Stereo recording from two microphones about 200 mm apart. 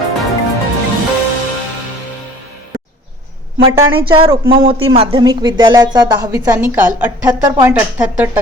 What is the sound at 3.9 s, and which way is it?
Speech, 25° right (ahead or behind).